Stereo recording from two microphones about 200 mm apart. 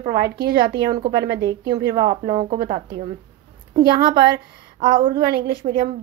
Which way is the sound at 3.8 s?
50° right (ahead or behind).